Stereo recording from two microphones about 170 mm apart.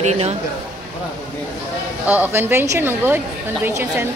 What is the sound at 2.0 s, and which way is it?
A woman's voice, 10° right (ahead or behind).